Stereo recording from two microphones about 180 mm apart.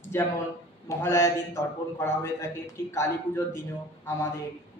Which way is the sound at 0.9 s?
15° left (ahead or behind).